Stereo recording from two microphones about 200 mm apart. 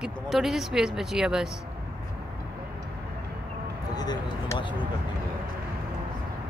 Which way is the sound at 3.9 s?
20° left (ahead or behind).